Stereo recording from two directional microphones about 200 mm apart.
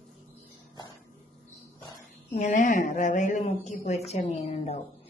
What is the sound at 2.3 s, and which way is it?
Speech, 40° left (ahead or behind).